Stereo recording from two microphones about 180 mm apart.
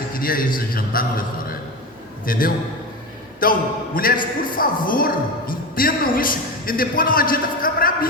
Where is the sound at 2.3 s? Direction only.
50° left (ahead or behind).